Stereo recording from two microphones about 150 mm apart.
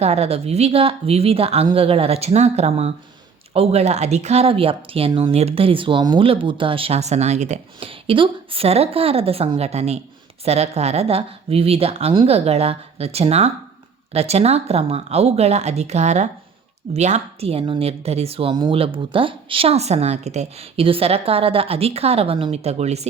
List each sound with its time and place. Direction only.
0.0 s speech: 45° right (ahead or behind)